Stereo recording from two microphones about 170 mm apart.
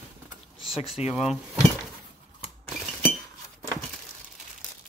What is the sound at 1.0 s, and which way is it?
Speech, 5° right (ahead or behind).